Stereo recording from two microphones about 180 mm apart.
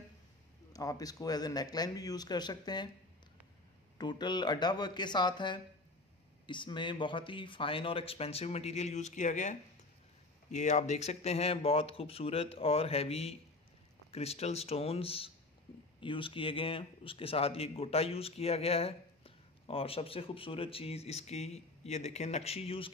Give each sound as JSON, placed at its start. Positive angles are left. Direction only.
{"t": 0.7, "sound": "speech", "side_deg": 20}
{"t": 4.0, "sound": "a man's voice", "side_deg": 25}